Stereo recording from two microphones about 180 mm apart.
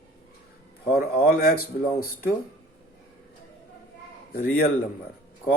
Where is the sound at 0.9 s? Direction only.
55° left (ahead or behind).